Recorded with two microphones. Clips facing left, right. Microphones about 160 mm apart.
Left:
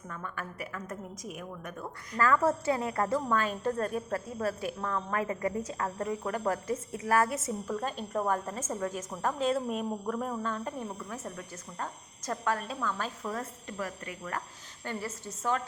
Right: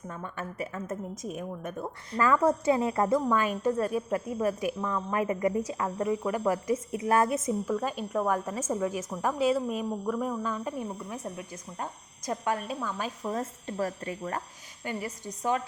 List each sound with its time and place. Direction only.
0.1 s a woman's voice: 25° right (ahead or behind)
2.1 s a woman's voice: 15° right (ahead or behind)
7.7 s a woman's voice: 5° right (ahead or behind)
13.3 s a woman's voice: 25° right (ahead or behind)
14.8 s a woman's voice: 15° right (ahead or behind)